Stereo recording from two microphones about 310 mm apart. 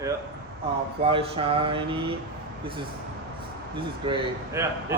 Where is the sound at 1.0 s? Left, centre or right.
Centre.